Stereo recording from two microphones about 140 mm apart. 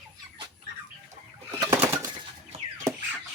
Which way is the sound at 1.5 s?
25° right (ahead or behind).